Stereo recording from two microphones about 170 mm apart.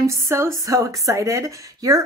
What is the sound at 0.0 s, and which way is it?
Speech, 15° right (ahead or behind).